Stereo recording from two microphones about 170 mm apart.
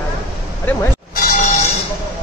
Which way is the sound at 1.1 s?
55° left (ahead or behind).